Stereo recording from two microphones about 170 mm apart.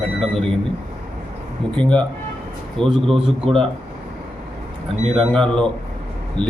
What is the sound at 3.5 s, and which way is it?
Speech, 35° right (ahead or behind).